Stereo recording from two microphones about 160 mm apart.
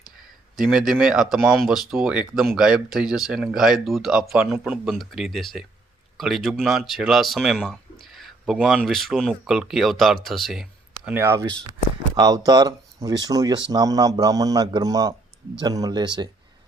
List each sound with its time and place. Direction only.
0.5 s speech: 5° right (ahead or behind)
11.1 s speech: 15° right (ahead or behind)